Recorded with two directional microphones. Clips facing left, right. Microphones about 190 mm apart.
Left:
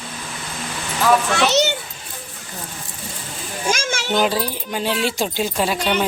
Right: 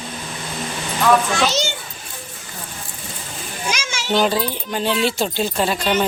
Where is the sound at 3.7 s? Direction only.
50° left (ahead or behind).